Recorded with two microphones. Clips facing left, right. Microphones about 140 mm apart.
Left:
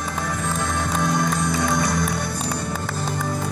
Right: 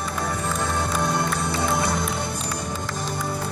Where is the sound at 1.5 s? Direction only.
30° right (ahead or behind).